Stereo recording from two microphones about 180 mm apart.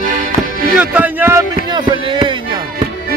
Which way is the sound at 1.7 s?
25° right (ahead or behind).